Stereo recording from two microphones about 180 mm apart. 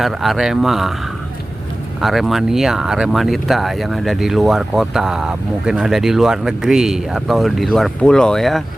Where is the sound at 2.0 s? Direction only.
Centre (ahead or behind).